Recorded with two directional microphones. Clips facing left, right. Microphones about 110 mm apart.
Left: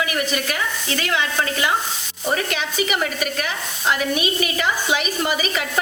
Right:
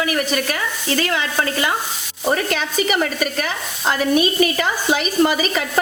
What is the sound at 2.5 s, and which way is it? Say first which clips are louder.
Stir: right 3 dB; 40° right (ahead or behind).